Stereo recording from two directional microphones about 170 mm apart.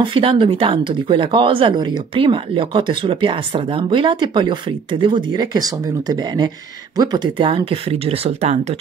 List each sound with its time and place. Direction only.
0.0 s speech: 30° right (ahead or behind)